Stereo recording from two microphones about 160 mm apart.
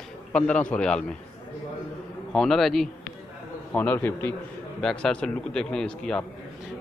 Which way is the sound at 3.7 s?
10° left (ahead or behind).